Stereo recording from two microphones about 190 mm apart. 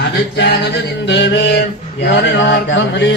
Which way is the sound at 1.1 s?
70° left (ahead or behind).